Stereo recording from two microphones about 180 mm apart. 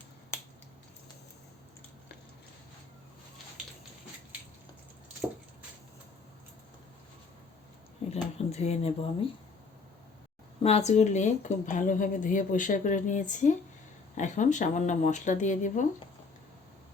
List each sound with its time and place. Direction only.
8.1 s speech: 35° left (ahead or behind)
10.6 s speech: 35° left (ahead or behind)